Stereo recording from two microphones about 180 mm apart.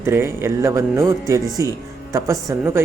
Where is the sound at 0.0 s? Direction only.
15° right (ahead or behind).